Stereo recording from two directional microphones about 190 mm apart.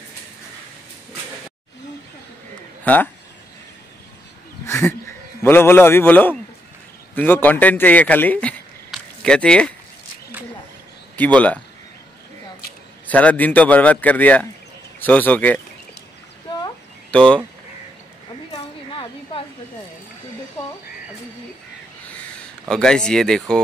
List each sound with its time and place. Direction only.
2.8 s a man's voice: 10° left (ahead or behind)
4.6 s a man's voice: 15° left (ahead or behind)
11.1 s a man's voice: 5° left (ahead or behind)
13.0 s a man's voice: 10° left (ahead or behind)
17.1 s speech: 5° left (ahead or behind)
18.5 s a sound: 25° left (ahead or behind)
22.7 s speech: 5° left (ahead or behind)